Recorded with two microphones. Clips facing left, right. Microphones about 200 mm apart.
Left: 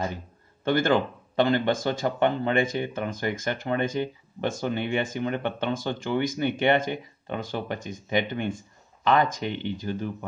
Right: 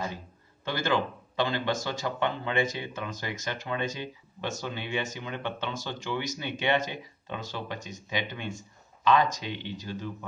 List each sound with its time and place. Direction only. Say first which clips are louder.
0.7 s speech: left 6 dB; 55° left (ahead or behind)